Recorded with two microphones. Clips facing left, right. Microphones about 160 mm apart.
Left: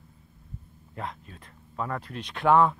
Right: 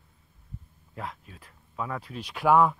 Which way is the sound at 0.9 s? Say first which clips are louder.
Left 1 dB; 5° right (ahead or behind).